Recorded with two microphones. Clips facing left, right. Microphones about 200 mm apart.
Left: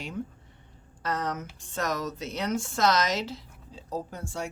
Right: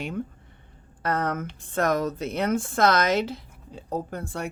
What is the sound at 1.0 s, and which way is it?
Speech, 55° right (ahead or behind).